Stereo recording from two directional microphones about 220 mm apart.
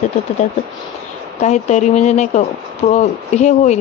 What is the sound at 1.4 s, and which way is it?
Speech, 30° left (ahead or behind).